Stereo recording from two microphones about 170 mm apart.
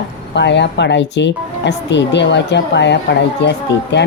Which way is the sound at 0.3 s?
90° left.